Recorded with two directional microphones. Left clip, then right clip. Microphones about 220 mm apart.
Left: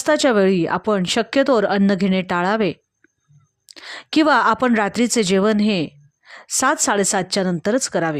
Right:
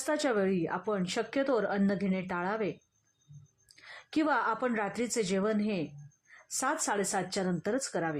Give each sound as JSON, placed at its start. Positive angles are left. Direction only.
{"t": 0.0, "sound": "a woman's voice", "side_deg": 45}